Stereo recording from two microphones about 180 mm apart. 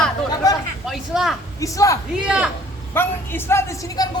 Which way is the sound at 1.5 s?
20° left (ahead or behind).